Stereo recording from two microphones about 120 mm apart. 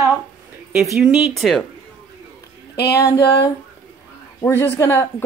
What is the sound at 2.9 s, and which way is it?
Speech, 25° left (ahead or behind).